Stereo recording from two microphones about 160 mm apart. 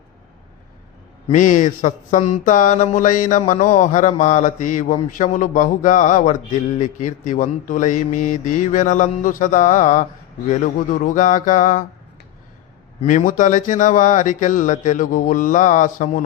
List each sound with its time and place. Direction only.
1.3 s speech: 50° left (ahead or behind)
13.0 s speech: 55° left (ahead or behind)